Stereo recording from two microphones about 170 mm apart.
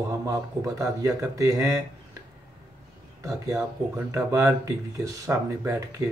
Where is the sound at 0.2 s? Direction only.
20° right (ahead or behind).